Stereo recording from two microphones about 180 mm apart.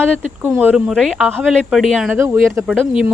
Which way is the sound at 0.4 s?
10° right (ahead or behind).